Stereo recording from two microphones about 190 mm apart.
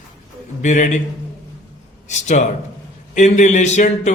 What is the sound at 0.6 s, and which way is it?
Speech, 40° left (ahead or behind).